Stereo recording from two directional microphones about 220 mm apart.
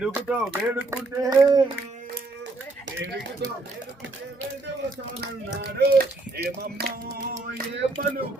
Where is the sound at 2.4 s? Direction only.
55° right (ahead or behind).